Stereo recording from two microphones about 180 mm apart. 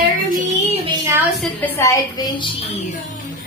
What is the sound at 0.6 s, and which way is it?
Child singing, 35° right (ahead or behind).